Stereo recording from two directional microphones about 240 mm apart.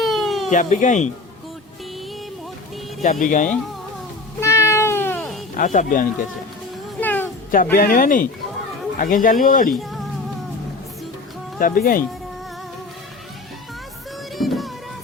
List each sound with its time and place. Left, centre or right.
0.0 s baby cry: centre
0.5 s speech: left
3.0 s speech: left
4.4 s cat: centre
5.5 s speech: left
7.0 s cat: centre
7.5 s speech: left
11.6 s speech: left
14.3 s music: centre